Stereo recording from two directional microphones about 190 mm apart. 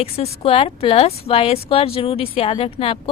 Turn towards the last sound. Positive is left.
turn(degrees=30)  # may be behind; listen again after turning